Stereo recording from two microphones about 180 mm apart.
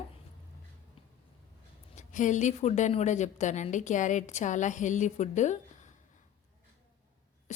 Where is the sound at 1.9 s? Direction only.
45° left (ahead or behind).